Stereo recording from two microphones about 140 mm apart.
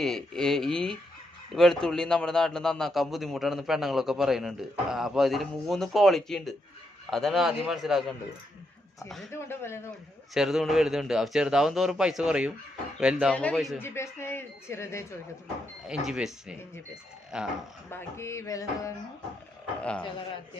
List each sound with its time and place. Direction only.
0.0 s a man's voice: 5° left (ahead or behind)
9.3 s speech: 20° left (ahead or behind)
10.3 s a man's voice: centre (ahead or behind)
13.3 s a man's voice: 10° left (ahead or behind)
13.8 s a woman's voice: 20° left (ahead or behind)
15.9 s a man's voice: 5° right (ahead or behind)
17.9 s speech: 20° left (ahead or behind)
19.8 s a woman's voice: 10° left (ahead or behind)